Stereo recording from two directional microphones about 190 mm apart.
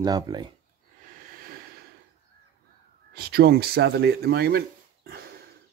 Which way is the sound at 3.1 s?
55° right (ahead or behind).